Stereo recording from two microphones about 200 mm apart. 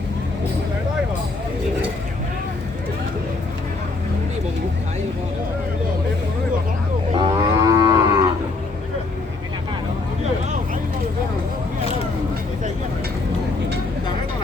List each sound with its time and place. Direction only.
7.1 s livestock: 20° right (ahead or behind)